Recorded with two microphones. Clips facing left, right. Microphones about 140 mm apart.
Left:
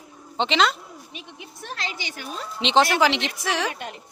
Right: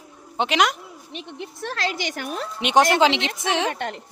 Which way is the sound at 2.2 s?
60° right (ahead or behind).